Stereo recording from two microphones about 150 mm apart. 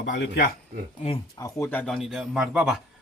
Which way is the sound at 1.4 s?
15° left (ahead or behind).